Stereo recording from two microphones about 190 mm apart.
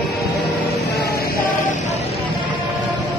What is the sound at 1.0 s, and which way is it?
Chant, 55° left (ahead or behind).